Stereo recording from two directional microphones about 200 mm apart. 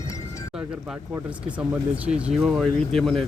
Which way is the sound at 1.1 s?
5° right (ahead or behind).